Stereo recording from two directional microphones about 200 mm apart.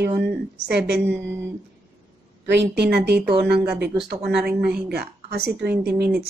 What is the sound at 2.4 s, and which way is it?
A woman's voice, 60° right (ahead or behind).